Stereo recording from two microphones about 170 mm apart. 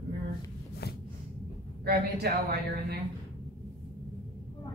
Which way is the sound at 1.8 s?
70° right (ahead or behind).